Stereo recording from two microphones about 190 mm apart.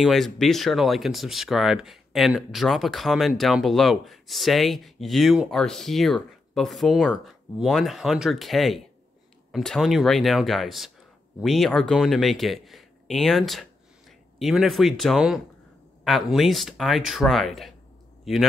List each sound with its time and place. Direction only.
0.0 s speech: centre (ahead or behind)